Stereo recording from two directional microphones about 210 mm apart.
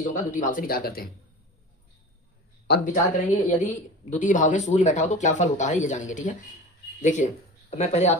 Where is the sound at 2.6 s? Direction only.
45° left (ahead or behind).